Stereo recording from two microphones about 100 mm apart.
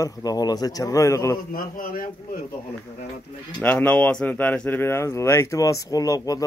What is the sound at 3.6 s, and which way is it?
Speech, 15° left (ahead or behind).